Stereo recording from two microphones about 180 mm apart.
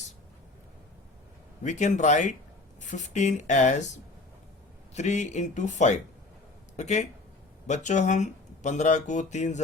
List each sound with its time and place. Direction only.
1.6 s speech: 40° left (ahead or behind)
4.9 s speech: 40° left (ahead or behind)